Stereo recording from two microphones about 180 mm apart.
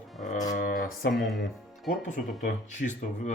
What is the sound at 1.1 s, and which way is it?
Speech, centre (ahead or behind).